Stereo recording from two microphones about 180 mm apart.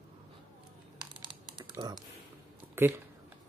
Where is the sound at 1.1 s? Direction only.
25° right (ahead or behind).